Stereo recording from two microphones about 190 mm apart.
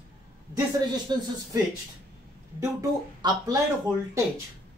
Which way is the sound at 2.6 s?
20° right (ahead or behind).